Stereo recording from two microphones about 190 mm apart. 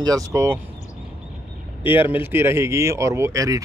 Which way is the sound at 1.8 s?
25° left (ahead or behind).